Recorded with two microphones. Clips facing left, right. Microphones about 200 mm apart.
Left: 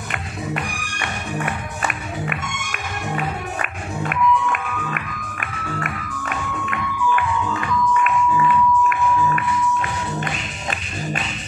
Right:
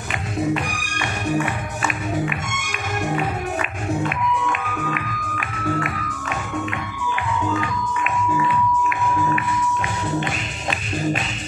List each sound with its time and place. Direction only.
4.1 s music: 55° left (ahead or behind)
6.2 s music: 55° left (ahead or behind)